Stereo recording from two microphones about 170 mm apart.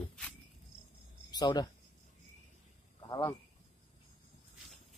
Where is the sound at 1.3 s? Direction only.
25° left (ahead or behind).